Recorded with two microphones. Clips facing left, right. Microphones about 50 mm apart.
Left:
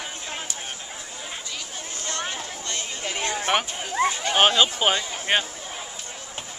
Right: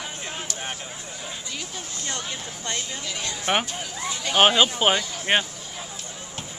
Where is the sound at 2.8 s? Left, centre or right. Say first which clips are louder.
Left 3 dB; left.